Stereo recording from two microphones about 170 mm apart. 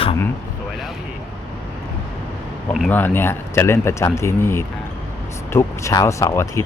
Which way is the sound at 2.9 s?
10° left (ahead or behind).